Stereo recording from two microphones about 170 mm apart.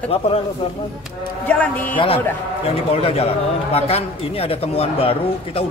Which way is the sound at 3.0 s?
35° left (ahead or behind).